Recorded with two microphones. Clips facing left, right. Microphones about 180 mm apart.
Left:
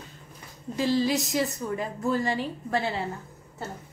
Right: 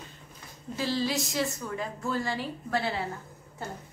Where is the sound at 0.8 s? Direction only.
Centre (ahead or behind).